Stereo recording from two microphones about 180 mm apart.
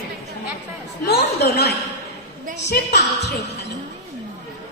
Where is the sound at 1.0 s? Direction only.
60° left (ahead or behind).